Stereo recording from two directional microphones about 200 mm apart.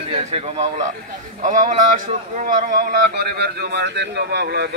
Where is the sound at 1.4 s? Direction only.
40° right (ahead or behind).